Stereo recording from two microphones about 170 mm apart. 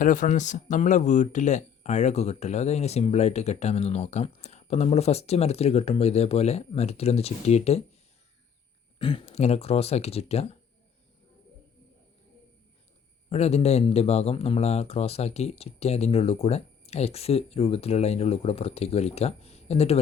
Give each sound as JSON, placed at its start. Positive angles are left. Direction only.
{"t": 0.0, "sound": "speech", "side_deg": 50}
{"t": 9.0, "sound": "speech", "side_deg": 30}
{"t": 13.3, "sound": "speech", "side_deg": 40}